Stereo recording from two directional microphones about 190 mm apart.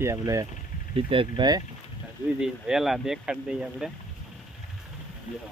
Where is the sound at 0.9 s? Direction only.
25° right (ahead or behind).